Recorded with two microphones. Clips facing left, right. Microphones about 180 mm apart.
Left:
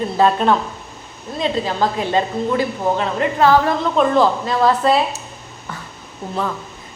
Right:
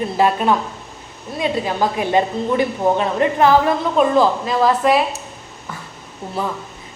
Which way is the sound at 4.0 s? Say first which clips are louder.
Even; 5° right (ahead or behind).